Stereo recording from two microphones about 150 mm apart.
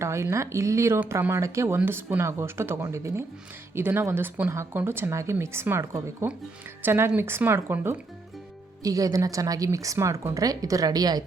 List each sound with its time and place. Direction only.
0.0 s a woman's voice: 20° right (ahead or behind)